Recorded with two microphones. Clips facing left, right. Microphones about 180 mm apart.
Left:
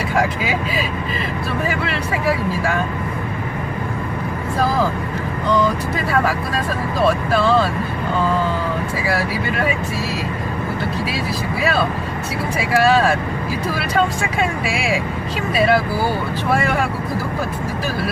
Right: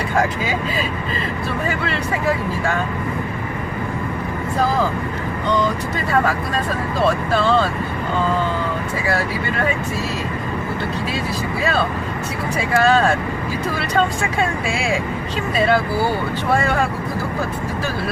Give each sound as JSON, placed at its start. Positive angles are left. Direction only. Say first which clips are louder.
{"t": 12.5, "sound": "speech", "louder": "left 1 dB", "side_deg": 10}
{"t": 15.5, "sound": "speech", "louder": "left 1 dB", "side_deg": 10}